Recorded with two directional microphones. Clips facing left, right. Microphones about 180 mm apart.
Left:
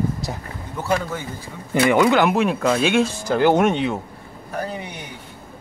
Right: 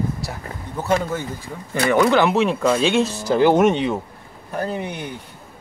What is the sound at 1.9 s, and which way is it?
Speech, 15° left (ahead or behind).